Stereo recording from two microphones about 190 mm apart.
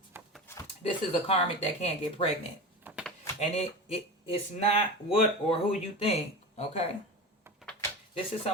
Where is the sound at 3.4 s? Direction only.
30° left (ahead or behind).